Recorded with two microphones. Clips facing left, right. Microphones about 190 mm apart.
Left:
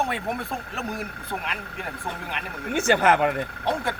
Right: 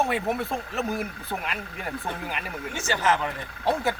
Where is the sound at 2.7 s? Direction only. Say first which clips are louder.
Left 6 dB; 60° left (ahead or behind).